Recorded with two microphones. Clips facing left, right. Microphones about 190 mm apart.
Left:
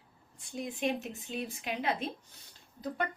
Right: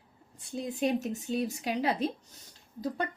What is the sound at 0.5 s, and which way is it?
Speech, 35° right (ahead or behind).